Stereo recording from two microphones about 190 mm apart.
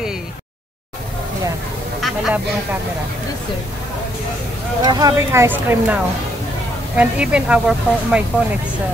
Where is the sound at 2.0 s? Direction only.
Centre (ahead or behind).